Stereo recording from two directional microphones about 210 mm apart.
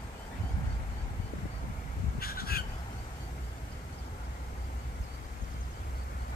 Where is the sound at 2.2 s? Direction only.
45° left (ahead or behind).